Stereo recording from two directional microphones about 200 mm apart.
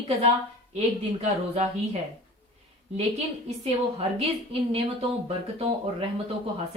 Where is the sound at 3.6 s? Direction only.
30° right (ahead or behind).